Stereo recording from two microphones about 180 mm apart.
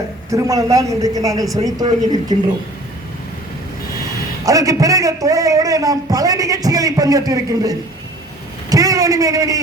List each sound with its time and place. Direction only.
0.3 s a woman's voice: 15° right (ahead or behind)
4.4 s a man's voice: 20° right (ahead or behind)